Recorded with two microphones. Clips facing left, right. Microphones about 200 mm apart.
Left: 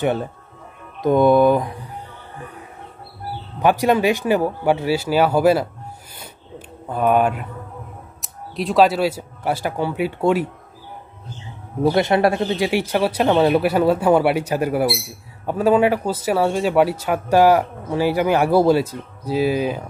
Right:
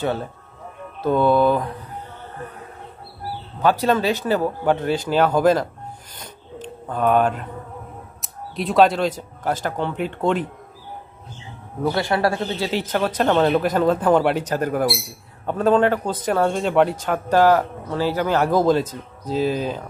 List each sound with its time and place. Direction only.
0.0 s a man's voice: 15° left (ahead or behind)
3.6 s a man's voice: 15° left (ahead or behind)
6.1 s a sound: 10° left (ahead or behind)
8.2 s speech: centre (ahead or behind)
11.8 s a man's voice: 20° left (ahead or behind)